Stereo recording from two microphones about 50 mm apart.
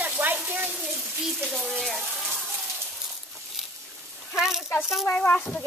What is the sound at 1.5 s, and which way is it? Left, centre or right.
Speech, centre.